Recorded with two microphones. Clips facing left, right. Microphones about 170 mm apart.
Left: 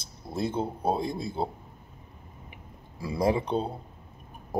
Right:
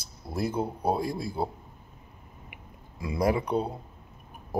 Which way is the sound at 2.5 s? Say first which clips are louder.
Left 1 dB; 30° left (ahead or behind).